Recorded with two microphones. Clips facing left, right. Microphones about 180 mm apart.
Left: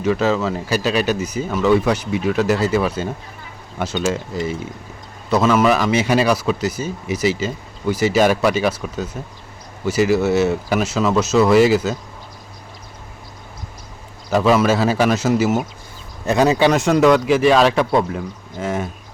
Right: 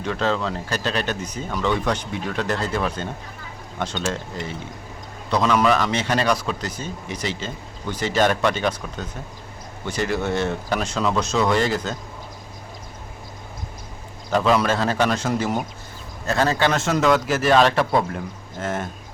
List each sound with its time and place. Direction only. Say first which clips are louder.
0.0 s speech: left 5 dB; 5° left (ahead or behind)
14.3 s speech: left 4 dB; 5° left (ahead or behind)
16.2 s speech: left 6 dB; 15° left (ahead or behind)
16.7 s speech: left 5 dB; centre (ahead or behind)